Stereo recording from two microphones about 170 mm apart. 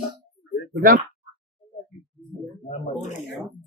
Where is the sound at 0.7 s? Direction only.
60° right (ahead or behind).